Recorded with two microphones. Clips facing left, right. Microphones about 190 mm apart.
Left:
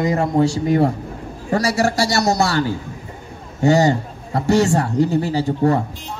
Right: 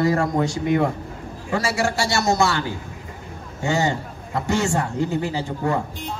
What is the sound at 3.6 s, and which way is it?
A man's voice, 40° left (ahead or behind).